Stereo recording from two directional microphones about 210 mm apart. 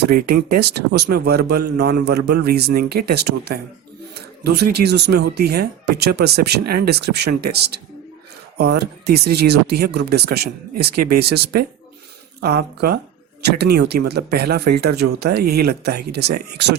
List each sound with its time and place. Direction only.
0.1 s speech: 45° right (ahead or behind)